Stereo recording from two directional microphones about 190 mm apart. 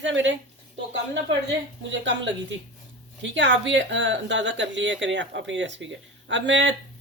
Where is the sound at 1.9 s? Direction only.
75° right (ahead or behind).